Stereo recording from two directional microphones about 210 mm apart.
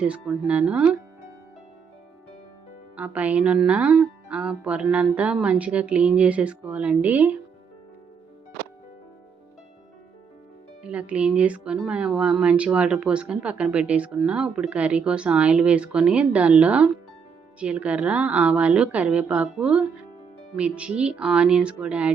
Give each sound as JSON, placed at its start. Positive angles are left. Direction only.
{"t": 0.0, "sound": "speech", "side_deg": -5}
{"t": 2.9, "sound": "speech", "side_deg": -5}
{"t": 10.8, "sound": "speech", "side_deg": -5}